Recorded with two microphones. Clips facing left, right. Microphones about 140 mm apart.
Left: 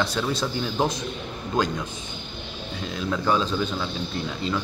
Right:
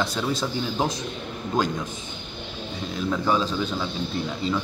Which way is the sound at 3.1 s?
5° right (ahead or behind).